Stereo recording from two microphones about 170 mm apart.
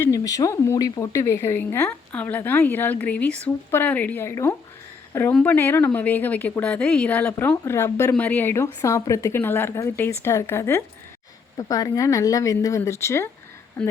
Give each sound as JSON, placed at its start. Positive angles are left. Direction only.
{"t": 0.0, "sound": "speech", "side_deg": 20}